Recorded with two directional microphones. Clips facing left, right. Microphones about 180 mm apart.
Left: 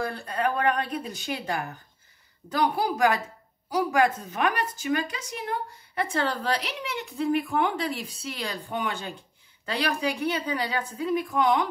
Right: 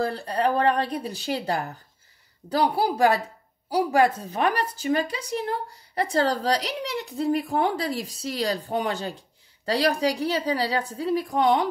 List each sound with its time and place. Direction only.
0.0 s a woman's voice: 35° right (ahead or behind)